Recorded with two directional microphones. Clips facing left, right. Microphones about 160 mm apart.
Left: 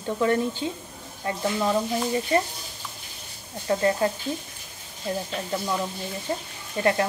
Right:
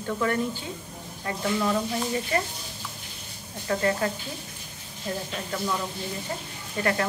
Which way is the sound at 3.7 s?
25° left (ahead or behind).